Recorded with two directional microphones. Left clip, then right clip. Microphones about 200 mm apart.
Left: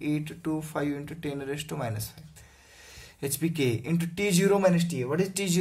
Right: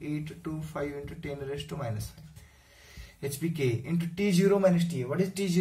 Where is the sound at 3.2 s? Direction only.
55° left (ahead or behind).